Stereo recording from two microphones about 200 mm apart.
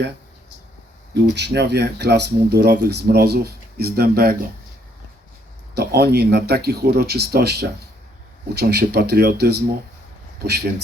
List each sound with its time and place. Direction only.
1.1 s speech: 55° right (ahead or behind)
5.7 s speech: 50° right (ahead or behind)